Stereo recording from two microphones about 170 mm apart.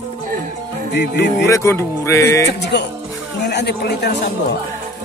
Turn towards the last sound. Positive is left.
turn(degrees=70)  # may be behind; listen again after turning